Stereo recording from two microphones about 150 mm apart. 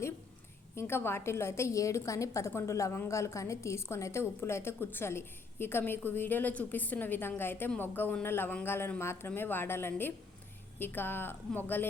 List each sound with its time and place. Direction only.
0.8 s a woman's voice: 15° left (ahead or behind)